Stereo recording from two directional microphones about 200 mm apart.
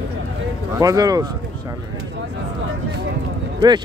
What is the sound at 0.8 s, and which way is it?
Speech, 20° right (ahead or behind).